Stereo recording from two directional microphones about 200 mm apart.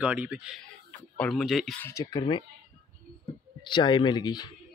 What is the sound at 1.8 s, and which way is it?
Speech, 20° left (ahead or behind).